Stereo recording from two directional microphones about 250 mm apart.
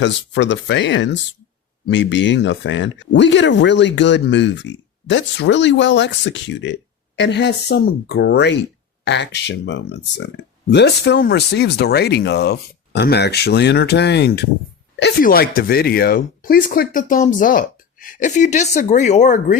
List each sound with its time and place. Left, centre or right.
0.0 s speech: left